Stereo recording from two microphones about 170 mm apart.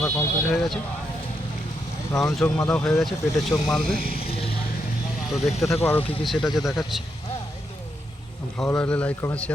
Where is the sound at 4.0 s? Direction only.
60° left (ahead or behind).